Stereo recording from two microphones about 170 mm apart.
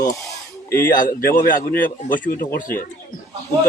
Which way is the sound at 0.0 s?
20° left (ahead or behind).